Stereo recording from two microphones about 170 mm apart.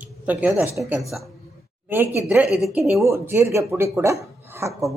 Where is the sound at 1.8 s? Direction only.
10° right (ahead or behind).